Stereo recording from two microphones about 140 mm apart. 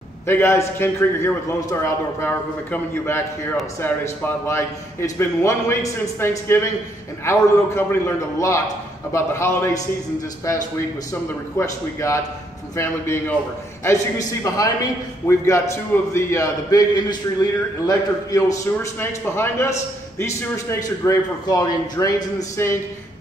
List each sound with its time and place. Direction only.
0.3 s a man's voice: 15° left (ahead or behind)
11.5 s a man's voice: 20° left (ahead or behind)